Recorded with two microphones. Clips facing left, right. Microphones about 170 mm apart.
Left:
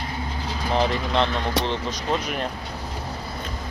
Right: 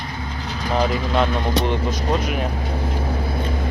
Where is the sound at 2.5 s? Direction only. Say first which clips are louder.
Right 8 dB; 55° right (ahead or behind).